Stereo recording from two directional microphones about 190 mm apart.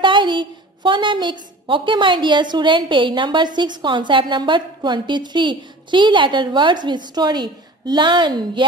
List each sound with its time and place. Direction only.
0.0 s a woman's voice: 25° right (ahead or behind)